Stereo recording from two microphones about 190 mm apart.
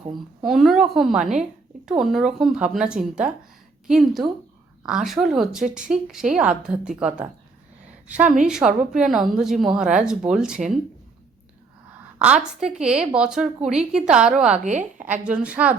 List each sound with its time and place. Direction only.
0.4 s a woman's voice: centre (ahead or behind)
12.2 s a woman's voice: 5° right (ahead or behind)
14.6 s a woman's voice: 40° right (ahead or behind)
15.0 s a woman's voice: 10° right (ahead or behind)